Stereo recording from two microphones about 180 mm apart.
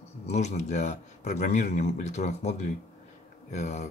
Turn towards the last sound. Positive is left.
turn(degrees=40)  # may be behind; listen again after turning